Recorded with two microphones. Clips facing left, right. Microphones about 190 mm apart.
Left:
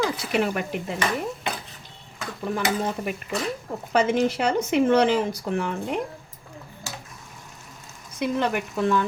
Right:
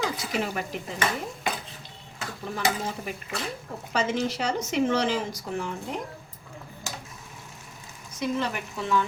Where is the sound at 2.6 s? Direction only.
65° left (ahead or behind).